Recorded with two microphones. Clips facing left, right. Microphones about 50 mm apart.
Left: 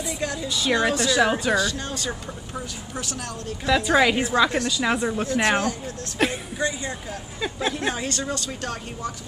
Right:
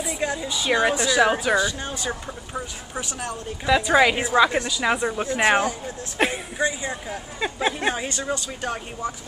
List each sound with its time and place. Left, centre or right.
0.2 s speech: centre
3.7 s speech: centre